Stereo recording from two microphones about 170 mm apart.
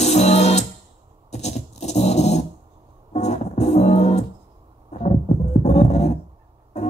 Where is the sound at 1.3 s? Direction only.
40° left (ahead or behind).